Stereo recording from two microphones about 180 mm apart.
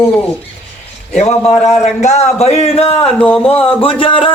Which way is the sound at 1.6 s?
40° left (ahead or behind).